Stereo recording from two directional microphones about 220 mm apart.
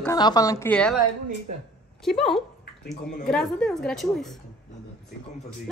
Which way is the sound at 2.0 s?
Centre (ahead or behind).